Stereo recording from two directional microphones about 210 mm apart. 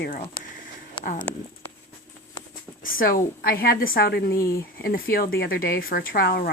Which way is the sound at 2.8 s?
40° left (ahead or behind).